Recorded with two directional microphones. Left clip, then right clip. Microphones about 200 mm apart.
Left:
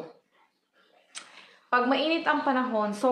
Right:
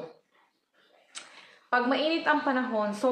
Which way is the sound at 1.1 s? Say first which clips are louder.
Left 1 dB; 10° left (ahead or behind).